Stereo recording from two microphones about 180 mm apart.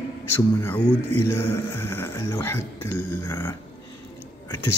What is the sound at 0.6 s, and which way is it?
Speech, 10° left (ahead or behind).